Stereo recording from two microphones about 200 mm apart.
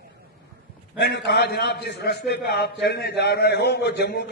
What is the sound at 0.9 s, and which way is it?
A man's voice, 60° left (ahead or behind).